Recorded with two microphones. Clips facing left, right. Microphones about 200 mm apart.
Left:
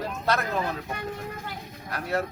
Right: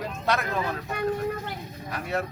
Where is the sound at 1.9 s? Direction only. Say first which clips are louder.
Left 1 dB; centre (ahead or behind).